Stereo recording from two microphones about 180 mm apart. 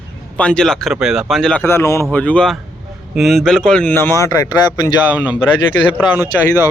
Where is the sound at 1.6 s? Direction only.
15° left (ahead or behind).